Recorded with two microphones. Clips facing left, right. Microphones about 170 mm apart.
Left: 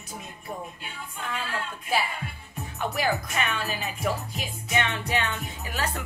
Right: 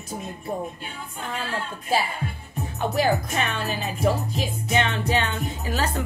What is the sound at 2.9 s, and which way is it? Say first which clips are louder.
Speech: right 5 dB; 30° right (ahead or behind).